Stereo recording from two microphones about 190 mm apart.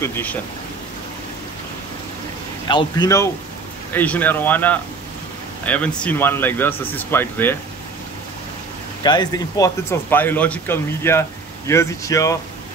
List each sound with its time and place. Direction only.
0.0 s speech: 10° left (ahead or behind)
2.7 s a man's voice: 20° left (ahead or behind)
3.9 s speech: 10° left (ahead or behind)
9.0 s speech: 20° left (ahead or behind)